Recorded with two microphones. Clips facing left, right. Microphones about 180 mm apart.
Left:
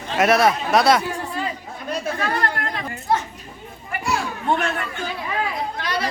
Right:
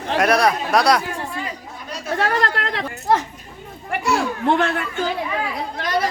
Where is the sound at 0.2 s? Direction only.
Centre (ahead or behind).